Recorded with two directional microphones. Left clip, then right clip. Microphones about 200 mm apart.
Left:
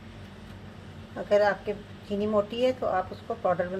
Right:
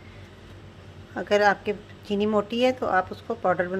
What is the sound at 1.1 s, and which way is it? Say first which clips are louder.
A woman's voice: right 2 dB; 40° right (ahead or behind).